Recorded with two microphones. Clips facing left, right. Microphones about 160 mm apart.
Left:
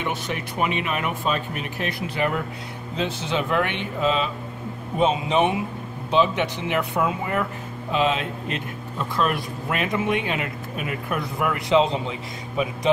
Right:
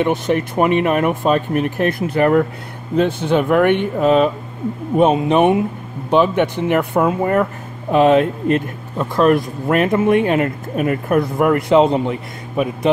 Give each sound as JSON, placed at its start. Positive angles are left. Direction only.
{"t": 0.0, "sound": "speech", "side_deg": -50}